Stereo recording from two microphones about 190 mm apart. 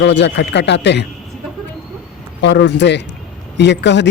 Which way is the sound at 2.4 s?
70° left (ahead or behind).